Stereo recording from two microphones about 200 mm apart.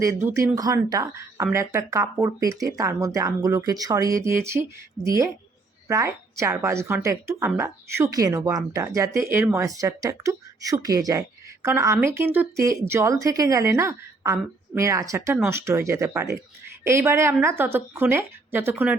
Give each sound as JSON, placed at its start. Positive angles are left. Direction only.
{"t": 0.0, "sound": "a woman's voice", "side_deg": -15}